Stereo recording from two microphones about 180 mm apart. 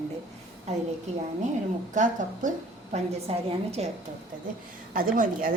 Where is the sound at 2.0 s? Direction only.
45° right (ahead or behind).